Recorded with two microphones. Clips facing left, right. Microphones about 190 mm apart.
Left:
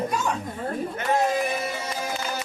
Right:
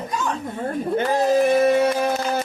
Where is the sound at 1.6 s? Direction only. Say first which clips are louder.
Right 13 dB; 60° right (ahead or behind).